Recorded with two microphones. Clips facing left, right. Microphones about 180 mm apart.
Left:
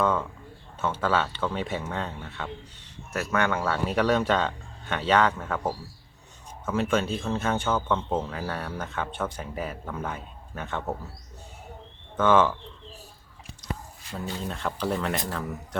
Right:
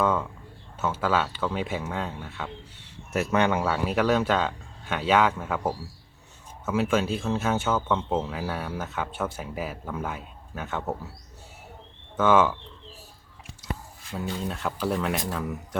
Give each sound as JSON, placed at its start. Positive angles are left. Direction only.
{"t": 0.0, "sound": "a sound", "side_deg": -10}
{"t": 0.8, "sound": "speech", "side_deg": -5}
{"t": 3.1, "sound": "speech", "side_deg": -20}
{"t": 3.6, "sound": "speech", "side_deg": -5}
{"t": 6.7, "sound": "speech", "side_deg": -5}
{"t": 12.1, "sound": "speech", "side_deg": -5}
{"t": 14.3, "sound": "speech", "side_deg": 0}